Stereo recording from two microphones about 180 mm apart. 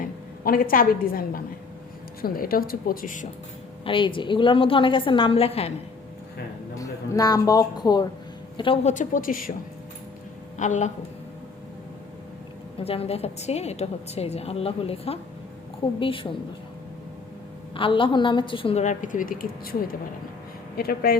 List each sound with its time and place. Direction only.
0.0 s a woman's voice: 55° left (ahead or behind)
3.8 s a woman's voice: 30° left (ahead or behind)
6.7 s a man's voice: 20° left (ahead or behind); by 9.5 s 50° left (ahead or behind)
10.6 s a woman's voice: 40° left (ahead or behind)
12.8 s a woman's voice: 35° left (ahead or behind)
17.7 s a woman's voice: 30° left (ahead or behind); by 21.2 s 60° left (ahead or behind)